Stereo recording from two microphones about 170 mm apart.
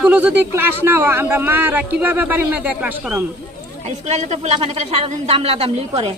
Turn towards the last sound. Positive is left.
turn(degrees=-35)  # may be behind; listen again after turning